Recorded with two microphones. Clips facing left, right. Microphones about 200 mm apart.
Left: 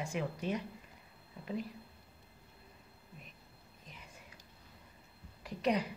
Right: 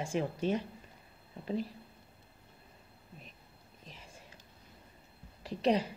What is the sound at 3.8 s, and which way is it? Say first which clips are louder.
Whispering: right 2 dB; 30° right (ahead or behind).